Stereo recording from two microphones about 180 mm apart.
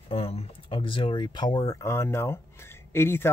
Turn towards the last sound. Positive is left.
turn(degrees=15)  # may be behind; listen again after turning